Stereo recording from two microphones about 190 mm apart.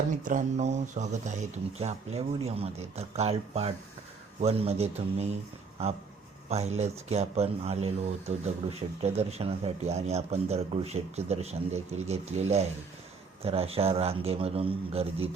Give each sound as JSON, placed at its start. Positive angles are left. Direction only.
{"t": 0.2, "sound": "a man's voice", "side_deg": -45}
{"t": 6.5, "sound": "a man's voice", "side_deg": -35}
{"t": 9.0, "sound": "a man's voice", "side_deg": -35}